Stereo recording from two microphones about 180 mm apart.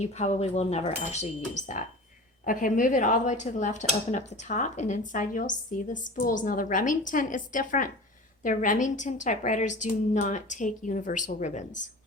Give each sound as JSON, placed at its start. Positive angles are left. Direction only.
{"t": 0.0, "sound": "speech", "side_deg": 40}